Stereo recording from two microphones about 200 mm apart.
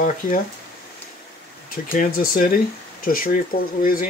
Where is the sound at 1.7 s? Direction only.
45° left (ahead or behind).